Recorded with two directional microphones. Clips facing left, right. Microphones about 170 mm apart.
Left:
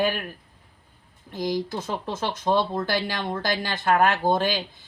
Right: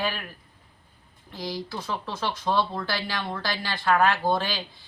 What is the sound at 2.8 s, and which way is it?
Speech, 50° left (ahead or behind).